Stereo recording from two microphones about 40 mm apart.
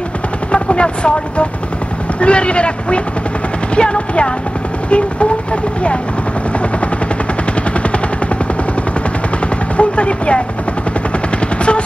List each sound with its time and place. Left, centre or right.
0.5 s helicopter: left
2.1 s a man's voice: left
9.8 s speech: left